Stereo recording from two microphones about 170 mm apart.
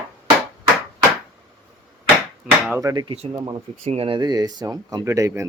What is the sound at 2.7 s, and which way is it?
Speech, 20° right (ahead or behind).